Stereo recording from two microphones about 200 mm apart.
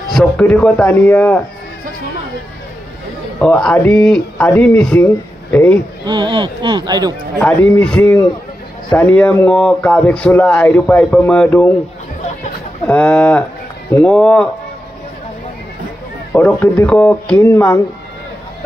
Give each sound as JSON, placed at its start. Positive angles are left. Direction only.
{"t": 0.1, "sound": "speech", "side_deg": 5}
{"t": 3.3, "sound": "speech", "side_deg": 5}
{"t": 6.0, "sound": "speech", "side_deg": -25}
{"t": 7.3, "sound": "speech", "side_deg": 10}
{"t": 12.8, "sound": "speech", "side_deg": 5}
{"t": 16.3, "sound": "speech", "side_deg": 10}